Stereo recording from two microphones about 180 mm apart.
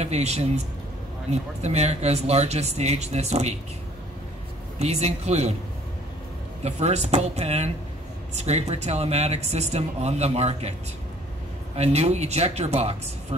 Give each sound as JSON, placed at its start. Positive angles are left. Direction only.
{"t": 0.0, "sound": "a man's voice", "side_deg": -35}
{"t": 1.6, "sound": "speech", "side_deg": -35}
{"t": 4.7, "sound": "speech", "side_deg": -35}
{"t": 6.6, "sound": "speech", "side_deg": -35}
{"t": 11.7, "sound": "speech", "side_deg": -35}